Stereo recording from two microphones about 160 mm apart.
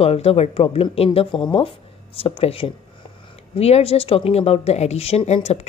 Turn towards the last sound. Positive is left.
turn(degrees=45)  # may be behind; listen again after turning